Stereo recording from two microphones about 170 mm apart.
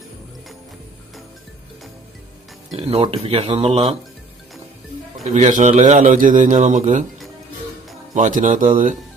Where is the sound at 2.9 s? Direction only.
35° right (ahead or behind).